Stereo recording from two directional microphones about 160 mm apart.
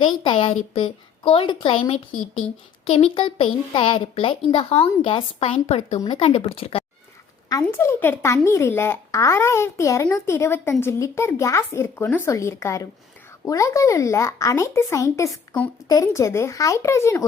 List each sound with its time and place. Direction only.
0.0 s a woman's voice: 30° left (ahead or behind)
7.6 s a child's voice: 15° left (ahead or behind)